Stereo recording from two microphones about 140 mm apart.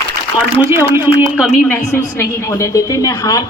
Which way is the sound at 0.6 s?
20° right (ahead or behind).